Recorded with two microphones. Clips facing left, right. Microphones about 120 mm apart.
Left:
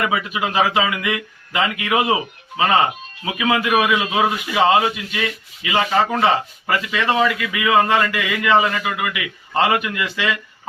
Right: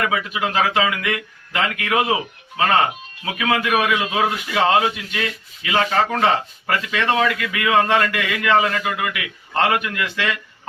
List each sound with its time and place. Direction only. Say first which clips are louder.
0.0 s speech: left 1 dB; 10° left (ahead or behind)